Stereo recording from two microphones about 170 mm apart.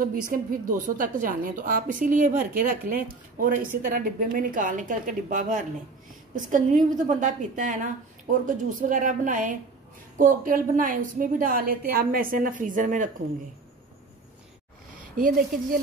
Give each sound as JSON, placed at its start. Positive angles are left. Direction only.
{"t": 0.0, "sound": "a woman's voice", "side_deg": -55}
{"t": 15.1, "sound": "speech", "side_deg": -55}